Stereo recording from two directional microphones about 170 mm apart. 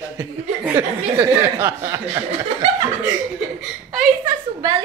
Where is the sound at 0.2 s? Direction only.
15° right (ahead or behind).